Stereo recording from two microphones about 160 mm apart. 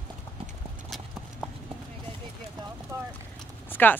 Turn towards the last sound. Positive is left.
turn(degrees=10)  # may be behind; listen again after turning